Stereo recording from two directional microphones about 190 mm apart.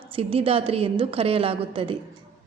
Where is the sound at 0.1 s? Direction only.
30° right (ahead or behind).